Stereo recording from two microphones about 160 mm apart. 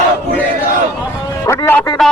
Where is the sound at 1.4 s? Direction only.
15° left (ahead or behind).